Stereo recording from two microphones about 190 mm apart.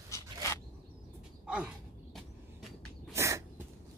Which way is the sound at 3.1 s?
15° right (ahead or behind).